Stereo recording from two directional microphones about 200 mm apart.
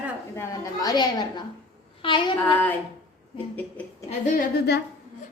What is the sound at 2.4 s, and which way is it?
Speech, 10° left (ahead or behind).